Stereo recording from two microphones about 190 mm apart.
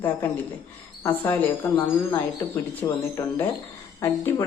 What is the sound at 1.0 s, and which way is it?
Speech, 10° left (ahead or behind).